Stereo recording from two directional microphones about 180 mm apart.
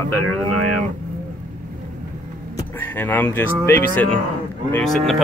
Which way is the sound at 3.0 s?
10° left (ahead or behind).